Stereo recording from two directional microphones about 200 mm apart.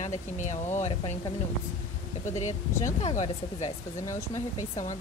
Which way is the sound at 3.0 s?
35° left (ahead or behind).